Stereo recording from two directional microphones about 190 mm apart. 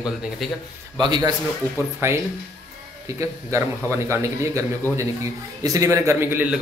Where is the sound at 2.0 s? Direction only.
15° right (ahead or behind).